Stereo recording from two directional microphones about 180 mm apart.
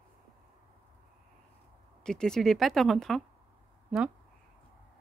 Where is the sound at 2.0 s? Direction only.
5° left (ahead or behind).